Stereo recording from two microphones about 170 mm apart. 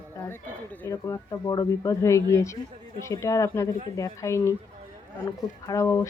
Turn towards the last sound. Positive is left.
turn(degrees=15)  # may be behind; listen again after turning